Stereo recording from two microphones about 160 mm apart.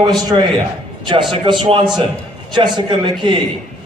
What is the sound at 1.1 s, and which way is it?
A man's voice, 30° right (ahead or behind).